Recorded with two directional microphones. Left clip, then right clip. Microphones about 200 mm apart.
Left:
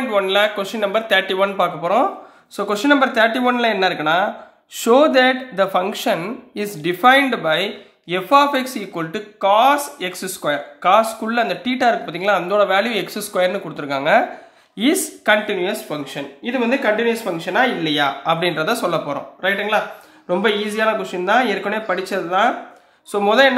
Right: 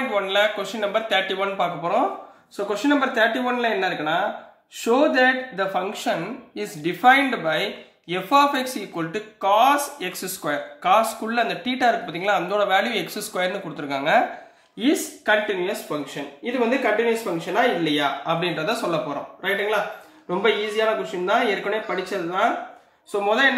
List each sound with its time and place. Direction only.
0.1 s speech: 30° left (ahead or behind)
14.8 s speech: 40° left (ahead or behind)